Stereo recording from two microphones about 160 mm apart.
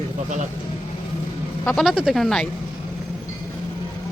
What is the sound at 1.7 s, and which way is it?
Speech, 5° right (ahead or behind).